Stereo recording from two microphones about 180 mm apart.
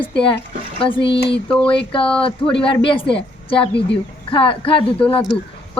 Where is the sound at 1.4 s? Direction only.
5° left (ahead or behind).